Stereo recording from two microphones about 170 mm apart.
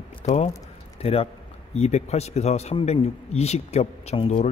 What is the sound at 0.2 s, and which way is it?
A man's voice, 40° left (ahead or behind).